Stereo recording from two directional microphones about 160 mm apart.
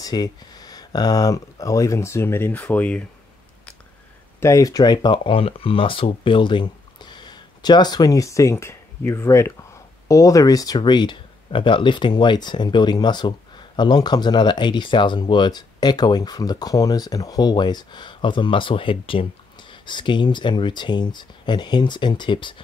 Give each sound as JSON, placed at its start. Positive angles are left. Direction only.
{"t": 0.0, "sound": "speech", "side_deg": 25}
{"t": 4.4, "sound": "speech", "side_deg": 20}